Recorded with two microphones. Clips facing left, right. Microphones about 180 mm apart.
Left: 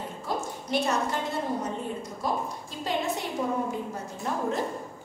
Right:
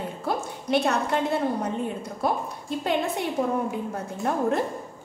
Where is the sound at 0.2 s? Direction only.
60° right (ahead or behind).